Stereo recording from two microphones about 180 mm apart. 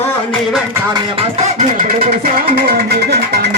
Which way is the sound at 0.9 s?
35° right (ahead or behind).